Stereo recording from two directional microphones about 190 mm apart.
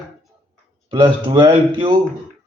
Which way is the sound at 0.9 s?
25° right (ahead or behind).